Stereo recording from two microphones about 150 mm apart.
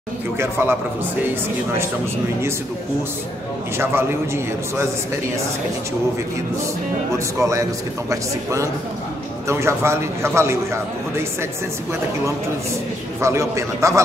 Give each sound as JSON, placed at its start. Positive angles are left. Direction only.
{"t": 0.4, "sound": "a man's voice", "side_deg": -15}
{"t": 3.7, "sound": "a man's voice", "side_deg": -15}
{"t": 7.3, "sound": "a man's voice", "side_deg": -20}
{"t": 13.2, "sound": "a man's voice", "side_deg": -20}